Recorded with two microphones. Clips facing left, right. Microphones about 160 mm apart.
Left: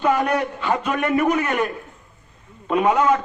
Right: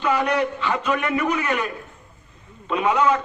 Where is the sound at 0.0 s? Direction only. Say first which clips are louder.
Left 1 dB; 45° left (ahead or behind).